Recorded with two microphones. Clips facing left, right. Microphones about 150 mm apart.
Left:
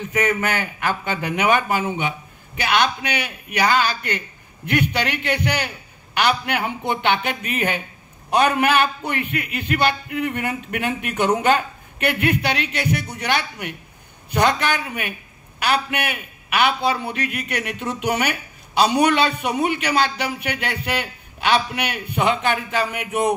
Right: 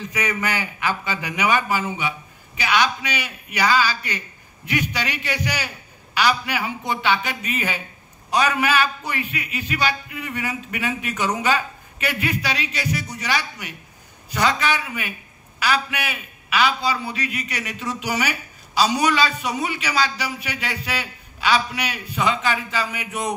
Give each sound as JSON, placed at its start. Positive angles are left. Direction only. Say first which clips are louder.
{"t": 0.0, "sound": "a man's voice", "louder": "left 4 dB", "side_deg": 55}